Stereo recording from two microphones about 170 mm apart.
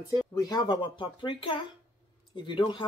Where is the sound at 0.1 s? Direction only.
25° left (ahead or behind).